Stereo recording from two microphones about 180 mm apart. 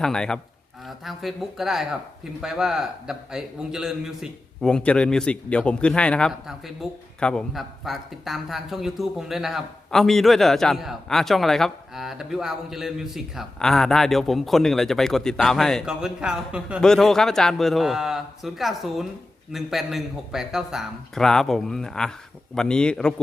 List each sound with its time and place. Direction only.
0.0 s speech: 5° left (ahead or behind)